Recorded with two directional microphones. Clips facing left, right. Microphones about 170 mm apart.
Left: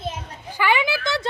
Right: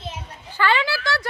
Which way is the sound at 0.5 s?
15° left (ahead or behind).